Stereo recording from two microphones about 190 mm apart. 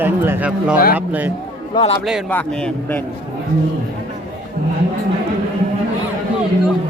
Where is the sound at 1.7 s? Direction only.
30° left (ahead or behind).